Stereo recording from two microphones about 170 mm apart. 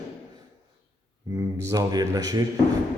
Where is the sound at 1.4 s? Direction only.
20° right (ahead or behind).